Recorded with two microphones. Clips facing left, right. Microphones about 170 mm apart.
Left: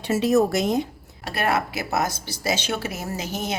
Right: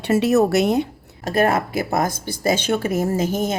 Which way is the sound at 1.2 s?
45° right (ahead or behind).